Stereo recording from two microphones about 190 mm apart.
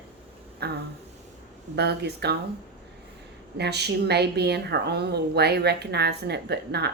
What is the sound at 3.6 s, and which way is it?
Speech, 60° right (ahead or behind).